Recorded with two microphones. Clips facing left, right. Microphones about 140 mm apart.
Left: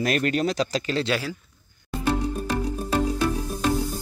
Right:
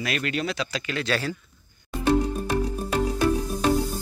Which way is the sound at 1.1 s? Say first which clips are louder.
Even; 10° left (ahead or behind).